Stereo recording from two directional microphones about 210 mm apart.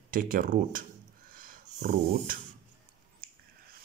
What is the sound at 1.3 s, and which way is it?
Dog, 40° right (ahead or behind).